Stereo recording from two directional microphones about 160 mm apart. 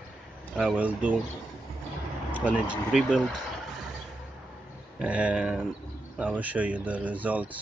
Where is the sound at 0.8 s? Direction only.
10° right (ahead or behind).